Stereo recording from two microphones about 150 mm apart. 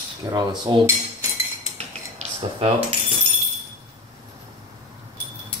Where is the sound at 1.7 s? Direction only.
45° right (ahead or behind).